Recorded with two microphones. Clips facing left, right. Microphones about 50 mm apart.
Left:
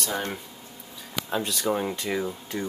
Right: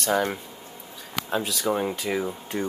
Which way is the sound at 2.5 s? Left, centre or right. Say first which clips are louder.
Right 3 dB; right.